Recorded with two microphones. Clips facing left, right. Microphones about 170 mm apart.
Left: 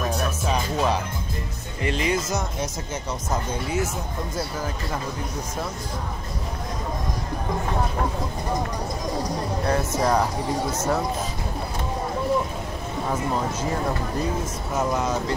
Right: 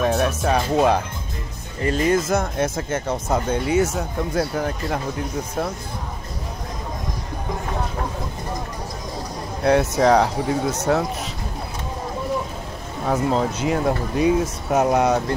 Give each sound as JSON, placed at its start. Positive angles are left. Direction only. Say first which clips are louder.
{"t": 0.1, "sound": "music", "louder": "right 5 dB", "side_deg": -65}
{"t": 0.7, "sound": "speech", "louder": "right 6 dB", "side_deg": -50}
{"t": 9.7, "sound": "speech", "louder": "right 7 dB", "side_deg": -70}
{"t": 13.1, "sound": "speech", "louder": "right 6 dB", "side_deg": -75}